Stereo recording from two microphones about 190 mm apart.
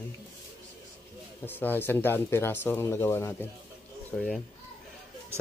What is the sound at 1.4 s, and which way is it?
Speech, 10° left (ahead or behind).